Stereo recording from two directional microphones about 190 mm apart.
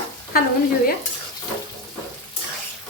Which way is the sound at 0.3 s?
50° left (ahead or behind).